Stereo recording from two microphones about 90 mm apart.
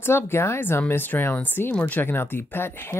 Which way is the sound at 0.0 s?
25° left (ahead or behind).